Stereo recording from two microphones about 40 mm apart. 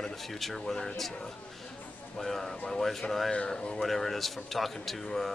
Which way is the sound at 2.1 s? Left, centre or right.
Centre.